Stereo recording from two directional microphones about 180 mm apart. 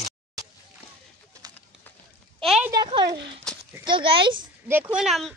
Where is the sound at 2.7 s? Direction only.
25° right (ahead or behind).